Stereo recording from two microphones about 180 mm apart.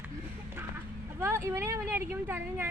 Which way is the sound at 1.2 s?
15° right (ahead or behind).